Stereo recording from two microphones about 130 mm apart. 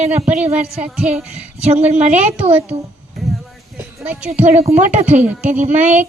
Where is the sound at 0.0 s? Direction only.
55° right (ahead or behind).